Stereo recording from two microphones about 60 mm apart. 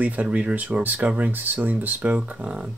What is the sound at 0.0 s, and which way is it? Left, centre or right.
Speech, right.